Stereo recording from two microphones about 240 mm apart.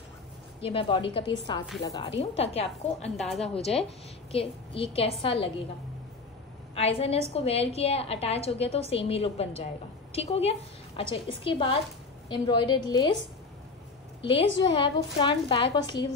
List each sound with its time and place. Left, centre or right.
0.6 s a woman's voice: left
3.2 s a woman's voice: centre
3.5 s a woman's voice: left
6.7 s a woman's voice: left
14.6 s a woman's voice: centre